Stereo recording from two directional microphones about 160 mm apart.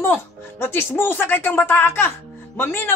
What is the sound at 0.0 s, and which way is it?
Speech, 15° left (ahead or behind).